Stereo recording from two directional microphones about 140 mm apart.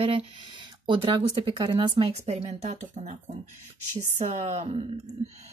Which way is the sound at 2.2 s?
55° right (ahead or behind).